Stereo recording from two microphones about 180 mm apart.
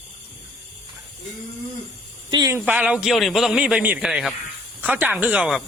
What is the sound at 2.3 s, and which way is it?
Speech, 20° right (ahead or behind).